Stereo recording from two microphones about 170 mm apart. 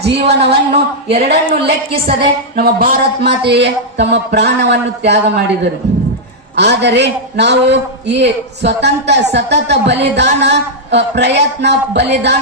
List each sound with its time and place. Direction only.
0.0 s speech: 80° right
2.2 s speech: 60° right (ahead or behind); by 5.2 s 80° right
6.6 s a man's voice: 90° right